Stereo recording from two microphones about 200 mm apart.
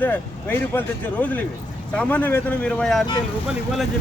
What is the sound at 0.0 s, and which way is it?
Speech, 10° left (ahead or behind).